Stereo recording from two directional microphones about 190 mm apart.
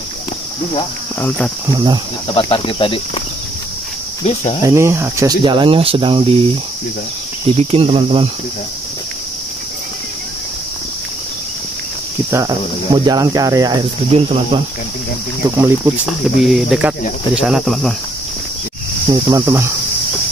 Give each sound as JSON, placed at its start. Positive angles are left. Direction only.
{"t": 1.7, "sound": "speech", "side_deg": -20}
{"t": 2.2, "sound": "insect", "side_deg": 30}
{"t": 4.6, "sound": "speech", "side_deg": -15}
{"t": 7.5, "sound": "speech", "side_deg": -30}
{"t": 12.3, "sound": "speech", "side_deg": -20}
{"t": 15.5, "sound": "speech", "side_deg": -15}
{"t": 16.1, "sound": "speech", "side_deg": 0}
{"t": 19.0, "sound": "speech", "side_deg": -20}